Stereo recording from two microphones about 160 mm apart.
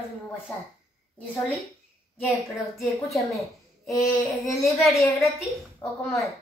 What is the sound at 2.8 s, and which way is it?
A woman's voice, centre (ahead or behind).